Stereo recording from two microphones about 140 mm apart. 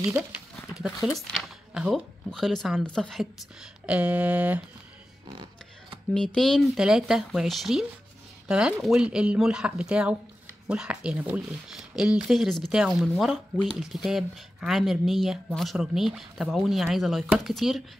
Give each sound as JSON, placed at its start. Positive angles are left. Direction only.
{"t": 0.7, "sound": "speech", "side_deg": -5}
{"t": 3.8, "sound": "speech", "side_deg": -10}
{"t": 6.1, "sound": "speech", "side_deg": 5}